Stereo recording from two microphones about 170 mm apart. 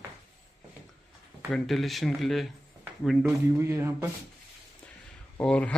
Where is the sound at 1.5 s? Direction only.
Centre (ahead or behind).